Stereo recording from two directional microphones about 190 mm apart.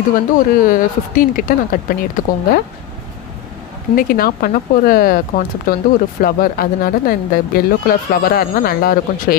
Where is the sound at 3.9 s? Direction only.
50° left (ahead or behind).